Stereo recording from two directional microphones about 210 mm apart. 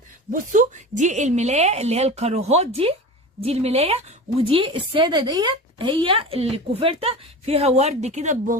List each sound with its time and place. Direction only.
0.3 s a woman's voice: 40° right (ahead or behind)